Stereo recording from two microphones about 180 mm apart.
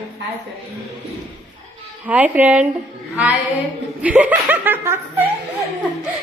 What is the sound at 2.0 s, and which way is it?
Speech, 10° right (ahead or behind).